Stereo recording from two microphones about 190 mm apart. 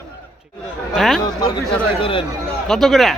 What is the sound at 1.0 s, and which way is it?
Speech, centre (ahead or behind).